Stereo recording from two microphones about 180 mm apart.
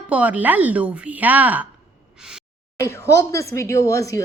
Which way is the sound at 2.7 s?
20° left (ahead or behind).